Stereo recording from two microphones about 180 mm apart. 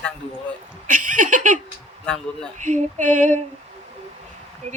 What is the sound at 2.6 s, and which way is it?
Speech, 40° right (ahead or behind).